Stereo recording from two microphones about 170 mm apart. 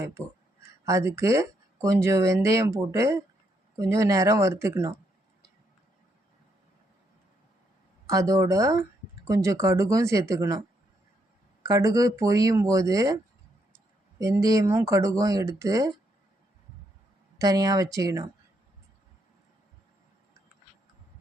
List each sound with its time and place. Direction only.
0.0 s speech: 15° right (ahead or behind)
8.0 s speech: 20° right (ahead or behind)
11.6 s speech: 20° right (ahead or behind)
14.2 s speech: 20° right (ahead or behind)
17.3 s speech: 20° right (ahead or behind)